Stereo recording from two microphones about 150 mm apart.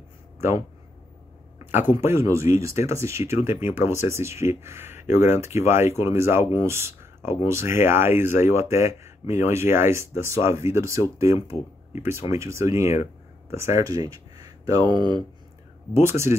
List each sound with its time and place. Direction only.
1.6 s speech: 15° right (ahead or behind)
15.9 s speech: 15° right (ahead or behind)